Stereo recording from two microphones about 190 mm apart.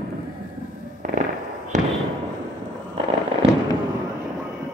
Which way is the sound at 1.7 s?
40° right (ahead or behind).